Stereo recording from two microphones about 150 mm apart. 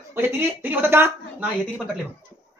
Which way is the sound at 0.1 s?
15° right (ahead or behind).